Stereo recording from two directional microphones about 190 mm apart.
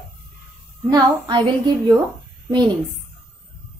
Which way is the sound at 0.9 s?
25° right (ahead or behind).